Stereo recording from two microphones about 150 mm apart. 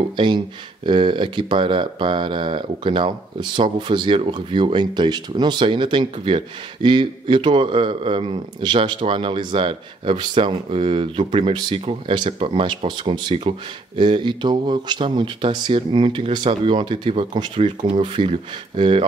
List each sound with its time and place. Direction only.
0.1 s speech: 30° right (ahead or behind)